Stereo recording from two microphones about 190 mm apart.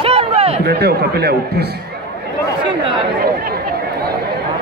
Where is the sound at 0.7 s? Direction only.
55° right (ahead or behind).